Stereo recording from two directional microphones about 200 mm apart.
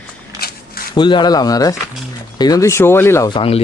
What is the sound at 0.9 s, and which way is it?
Speech, 25° left (ahead or behind).